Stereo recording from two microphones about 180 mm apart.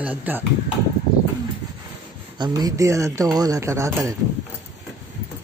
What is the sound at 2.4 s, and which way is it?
Speech, 20° right (ahead or behind).